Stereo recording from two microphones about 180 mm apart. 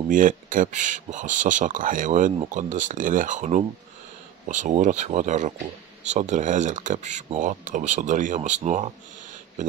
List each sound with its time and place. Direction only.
0.1 s speech: 50° right (ahead or behind)